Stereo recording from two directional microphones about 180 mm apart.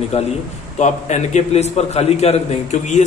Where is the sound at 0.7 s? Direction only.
40° left (ahead or behind).